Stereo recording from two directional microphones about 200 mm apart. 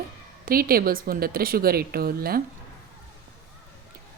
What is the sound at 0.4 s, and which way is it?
Speech, 45° right (ahead or behind).